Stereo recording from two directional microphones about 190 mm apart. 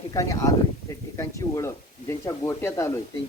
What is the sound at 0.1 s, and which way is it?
Speech, 20° left (ahead or behind).